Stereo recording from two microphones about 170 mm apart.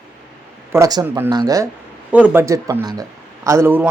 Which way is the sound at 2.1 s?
10° right (ahead or behind).